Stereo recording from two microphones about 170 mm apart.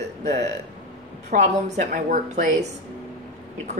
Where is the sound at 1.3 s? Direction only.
45° right (ahead or behind).